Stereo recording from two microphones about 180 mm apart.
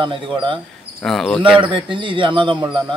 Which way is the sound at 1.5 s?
30° right (ahead or behind).